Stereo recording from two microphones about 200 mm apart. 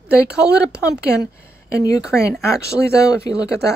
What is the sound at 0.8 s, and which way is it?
Speech, 15° left (ahead or behind).